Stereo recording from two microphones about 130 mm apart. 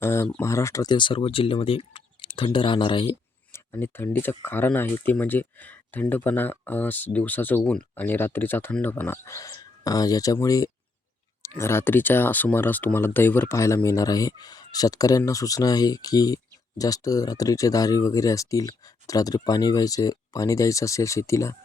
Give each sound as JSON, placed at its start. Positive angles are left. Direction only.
{"t": 0.0, "sound": "speech", "side_deg": 20}
{"t": 3.5, "sound": "speech", "side_deg": 20}